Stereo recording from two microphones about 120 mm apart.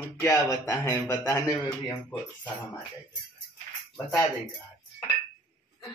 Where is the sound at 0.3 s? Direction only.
30° left (ahead or behind).